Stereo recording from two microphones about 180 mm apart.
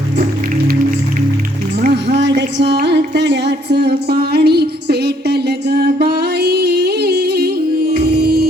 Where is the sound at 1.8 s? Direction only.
65° right (ahead or behind).